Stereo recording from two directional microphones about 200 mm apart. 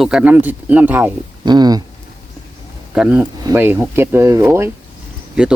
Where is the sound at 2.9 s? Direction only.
5° right (ahead or behind).